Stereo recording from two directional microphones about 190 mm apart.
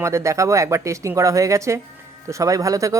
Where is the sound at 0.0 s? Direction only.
15° right (ahead or behind).